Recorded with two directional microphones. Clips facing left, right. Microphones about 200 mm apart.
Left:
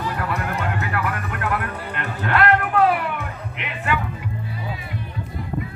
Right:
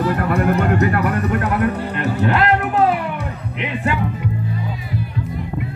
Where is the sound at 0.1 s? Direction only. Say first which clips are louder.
Right 9 dB; 50° right (ahead or behind).